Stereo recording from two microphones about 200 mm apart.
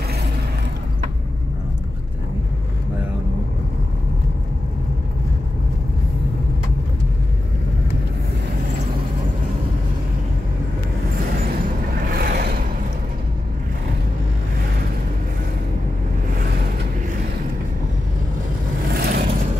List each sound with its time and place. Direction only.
12.1 s vehicle: 50° right (ahead or behind)
18.9 s vehicle: 50° right (ahead or behind)